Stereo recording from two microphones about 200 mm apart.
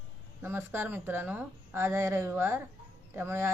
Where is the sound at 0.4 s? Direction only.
10° right (ahead or behind).